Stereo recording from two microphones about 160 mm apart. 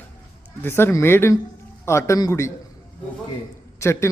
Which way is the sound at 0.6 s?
15° left (ahead or behind).